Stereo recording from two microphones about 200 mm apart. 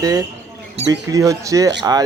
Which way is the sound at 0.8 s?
30° right (ahead or behind).